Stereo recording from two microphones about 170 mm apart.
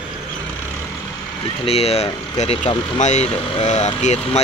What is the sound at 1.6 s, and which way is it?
Speech, 35° left (ahead or behind).